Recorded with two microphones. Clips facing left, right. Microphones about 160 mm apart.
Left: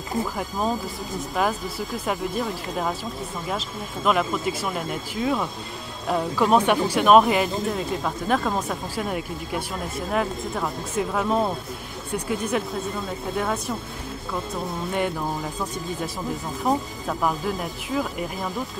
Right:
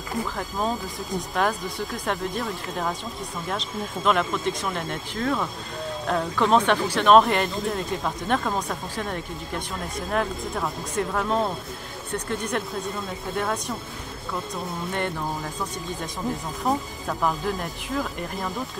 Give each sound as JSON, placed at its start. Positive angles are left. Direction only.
{"t": 0.4, "sound": "speech", "side_deg": 5}
{"t": 16.6, "sound": "speech", "side_deg": 5}